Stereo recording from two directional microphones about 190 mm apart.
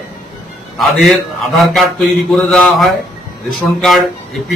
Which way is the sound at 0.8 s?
Centre (ahead or behind).